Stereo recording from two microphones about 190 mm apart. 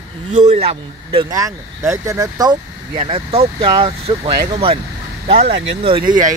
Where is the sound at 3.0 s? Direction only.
30° right (ahead or behind).